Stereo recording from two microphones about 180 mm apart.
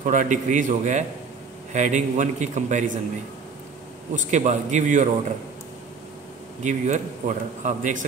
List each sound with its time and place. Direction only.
0.0 s a man's voice: 45° right (ahead or behind)
4.1 s a man's voice: 45° right (ahead or behind)
6.6 s a man's voice: 45° right (ahead or behind)